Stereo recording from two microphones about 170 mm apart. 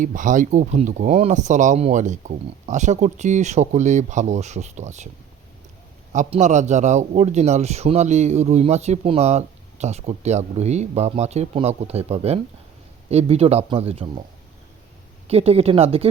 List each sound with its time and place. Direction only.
0.0 s speech: 50° right (ahead or behind)
6.1 s a man's voice: 45° right (ahead or behind)
15.3 s a man's voice: 40° right (ahead or behind)